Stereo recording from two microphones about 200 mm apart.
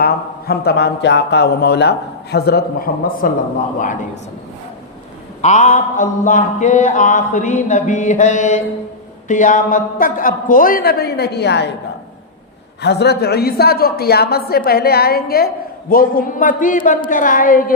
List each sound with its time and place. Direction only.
0.0 s a woman's voice: 50° left (ahead or behind)
5.4 s a sound: 35° left (ahead or behind)
9.2 s a woman's voice: 40° left (ahead or behind); by 11.7 s 55° left (ahead or behind)
12.8 s a woman's voice: 55° left (ahead or behind)